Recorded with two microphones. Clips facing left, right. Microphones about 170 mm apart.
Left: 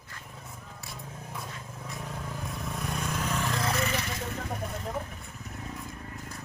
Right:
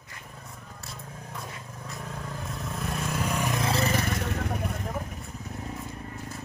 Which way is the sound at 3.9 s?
50° right (ahead or behind).